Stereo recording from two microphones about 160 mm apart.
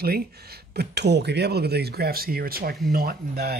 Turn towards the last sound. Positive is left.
turn(degrees=-75)  # may be behind; listen again after turning